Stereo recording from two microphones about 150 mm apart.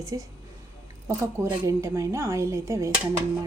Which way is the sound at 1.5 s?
20° right (ahead or behind).